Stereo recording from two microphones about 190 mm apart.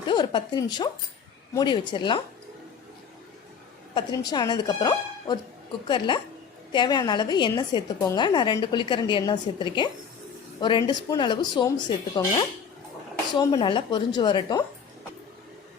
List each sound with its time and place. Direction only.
0.1 s a woman's voice: 25° left (ahead or behind)
3.9 s a woman's voice: 20° left (ahead or behind)